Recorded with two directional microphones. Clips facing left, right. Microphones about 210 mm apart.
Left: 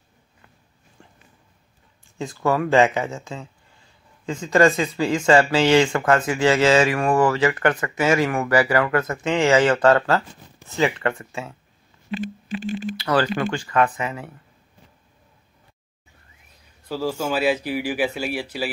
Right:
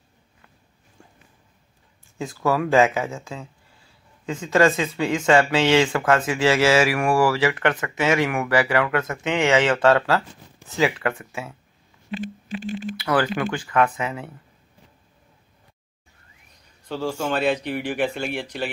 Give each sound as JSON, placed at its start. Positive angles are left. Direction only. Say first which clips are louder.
{"t": 2.1, "sound": "speech", "louder": "left 1 dB", "side_deg": -5}
{"t": 13.0, "sound": "speech", "louder": "left 1 dB", "side_deg": -10}
{"t": 16.8, "sound": "speech", "louder": "left 1 dB", "side_deg": 5}